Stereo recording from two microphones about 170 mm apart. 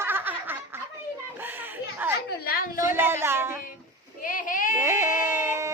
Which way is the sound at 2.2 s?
60° left (ahead or behind).